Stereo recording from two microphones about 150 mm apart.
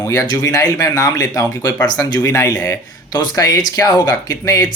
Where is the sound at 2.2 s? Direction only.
15° left (ahead or behind).